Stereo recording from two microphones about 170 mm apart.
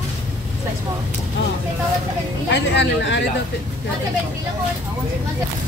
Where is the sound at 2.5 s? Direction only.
90° left.